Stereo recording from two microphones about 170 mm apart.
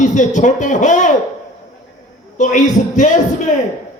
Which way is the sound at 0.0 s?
45° left (ahead or behind).